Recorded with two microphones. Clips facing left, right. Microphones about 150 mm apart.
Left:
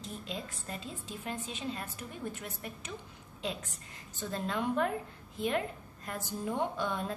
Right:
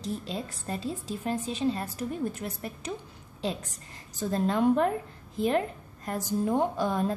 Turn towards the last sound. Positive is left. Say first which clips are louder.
# right 7 dB
turn(degrees=-35)  # may be behind; listen again after turning